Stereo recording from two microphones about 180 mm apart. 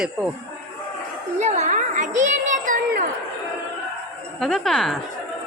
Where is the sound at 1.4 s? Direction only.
40° right (ahead or behind).